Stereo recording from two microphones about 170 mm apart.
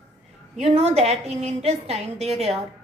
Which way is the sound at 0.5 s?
40° right (ahead or behind).